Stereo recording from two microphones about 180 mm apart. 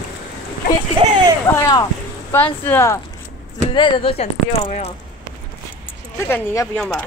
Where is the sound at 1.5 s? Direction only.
20° left (ahead or behind).